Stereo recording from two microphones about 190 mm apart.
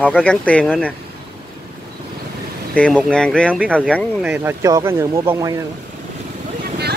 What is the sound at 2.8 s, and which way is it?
Speech, 10° left (ahead or behind).